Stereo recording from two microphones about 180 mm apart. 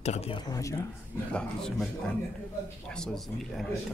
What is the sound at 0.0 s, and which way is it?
Speech, 35° left (ahead or behind).